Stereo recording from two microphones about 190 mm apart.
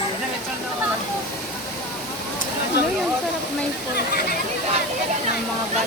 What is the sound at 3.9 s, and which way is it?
Speech, 55° left (ahead or behind).